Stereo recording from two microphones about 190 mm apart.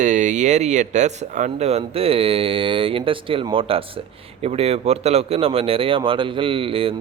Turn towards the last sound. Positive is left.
turn(degrees=-30)  # may be behind; listen again after turning